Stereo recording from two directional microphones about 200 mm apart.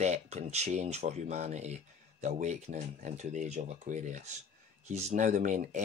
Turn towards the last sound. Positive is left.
turn(degrees=-40)  # may be behind; listen again after turning